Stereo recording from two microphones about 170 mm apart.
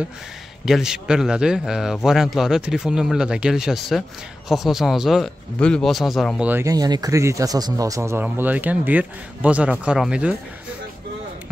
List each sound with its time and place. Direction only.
0.7 s speech: 5° right (ahead or behind)
6.6 s speech: 20° right (ahead or behind); by 10.3 s 5° right (ahead or behind)